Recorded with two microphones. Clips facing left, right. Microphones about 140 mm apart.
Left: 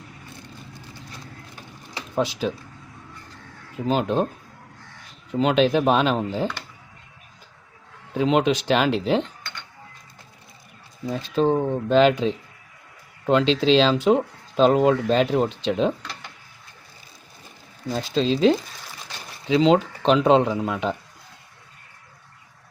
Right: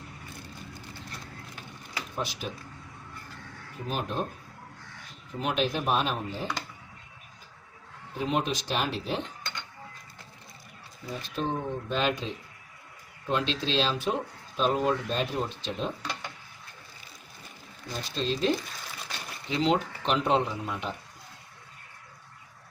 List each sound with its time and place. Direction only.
2.4 s speech: 90° left
3.8 s speech: 90° left
5.3 s speech: 90° left
8.1 s speech: 90° left
11.1 s speech: 90° left
17.9 s speech: 90° left